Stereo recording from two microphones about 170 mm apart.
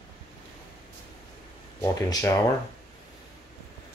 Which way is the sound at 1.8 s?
20° left (ahead or behind).